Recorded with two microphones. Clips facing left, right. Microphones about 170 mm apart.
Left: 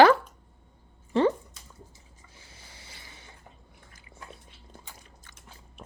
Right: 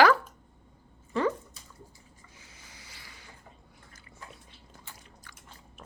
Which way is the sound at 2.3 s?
30° left (ahead or behind).